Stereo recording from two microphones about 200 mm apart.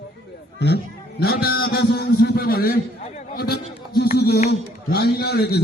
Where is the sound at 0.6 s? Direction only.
55° left (ahead or behind).